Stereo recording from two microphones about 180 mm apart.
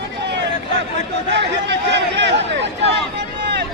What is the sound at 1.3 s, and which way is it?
Chatter, 70° right (ahead or behind).